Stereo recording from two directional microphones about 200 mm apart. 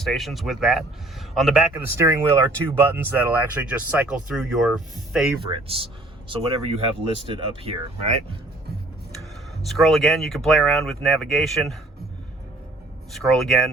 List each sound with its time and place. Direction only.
0.0 s speech: centre (ahead or behind)
2.0 s speech: 15° right (ahead or behind)
5.5 s speech: 25° right (ahead or behind)
9.6 s speech: centre (ahead or behind)
13.1 s speech: centre (ahead or behind)